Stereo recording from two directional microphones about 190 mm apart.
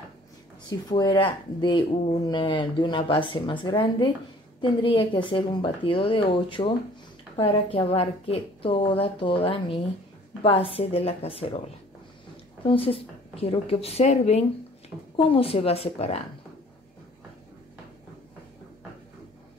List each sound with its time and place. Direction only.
0.7 s speech: 20° left (ahead or behind)
12.6 s a woman's voice: 30° left (ahead or behind)